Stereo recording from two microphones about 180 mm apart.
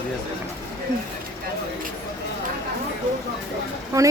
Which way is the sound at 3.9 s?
20° right (ahead or behind).